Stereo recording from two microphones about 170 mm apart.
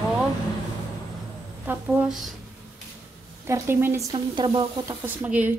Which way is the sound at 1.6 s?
10° right (ahead or behind).